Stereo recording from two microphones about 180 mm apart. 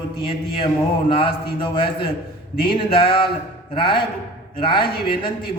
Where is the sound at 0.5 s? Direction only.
30° left (ahead or behind).